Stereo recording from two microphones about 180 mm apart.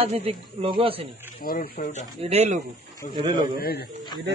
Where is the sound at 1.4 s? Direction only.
50° left (ahead or behind).